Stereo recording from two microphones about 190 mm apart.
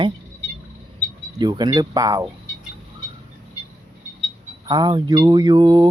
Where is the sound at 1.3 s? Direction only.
20° right (ahead or behind).